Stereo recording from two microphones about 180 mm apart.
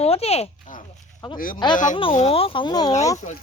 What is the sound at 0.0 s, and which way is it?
Speech, 35° left (ahead or behind).